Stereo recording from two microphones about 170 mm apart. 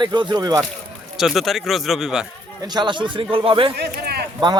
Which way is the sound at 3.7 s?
75° right (ahead or behind).